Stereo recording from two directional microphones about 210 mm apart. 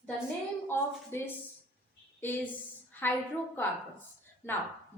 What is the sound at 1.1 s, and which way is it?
Speech, 10° left (ahead or behind).